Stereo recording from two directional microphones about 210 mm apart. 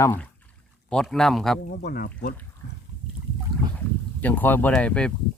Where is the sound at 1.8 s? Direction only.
45° left (ahead or behind).